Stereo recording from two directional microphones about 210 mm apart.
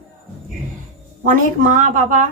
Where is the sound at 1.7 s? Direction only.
40° right (ahead or behind).